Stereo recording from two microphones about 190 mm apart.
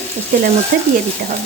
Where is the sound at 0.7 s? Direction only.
50° right (ahead or behind).